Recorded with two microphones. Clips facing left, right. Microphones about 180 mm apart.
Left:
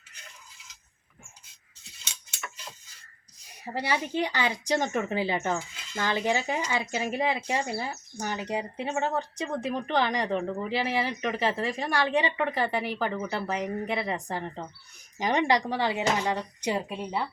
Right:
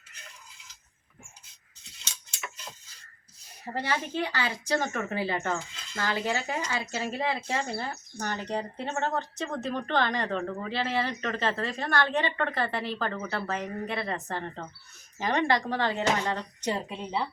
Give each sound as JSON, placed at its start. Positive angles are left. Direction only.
{"t": 3.8, "sound": "speech", "side_deg": 15}
{"t": 5.5, "sound": "speech", "side_deg": 5}
{"t": 6.1, "sound": "speech", "side_deg": 20}